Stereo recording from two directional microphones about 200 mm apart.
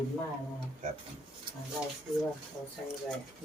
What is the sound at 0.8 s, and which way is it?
Speech, 40° right (ahead or behind).